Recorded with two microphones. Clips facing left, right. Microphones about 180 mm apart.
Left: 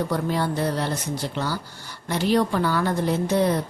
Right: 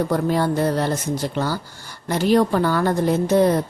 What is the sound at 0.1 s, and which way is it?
Speech, 45° right (ahead or behind).